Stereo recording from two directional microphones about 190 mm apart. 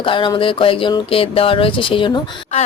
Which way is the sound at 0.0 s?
25° left (ahead or behind).